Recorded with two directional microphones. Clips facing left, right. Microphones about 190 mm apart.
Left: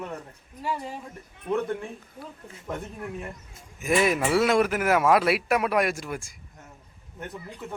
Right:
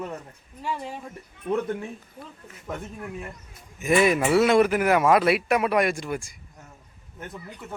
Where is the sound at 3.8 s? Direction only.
Centre (ahead or behind).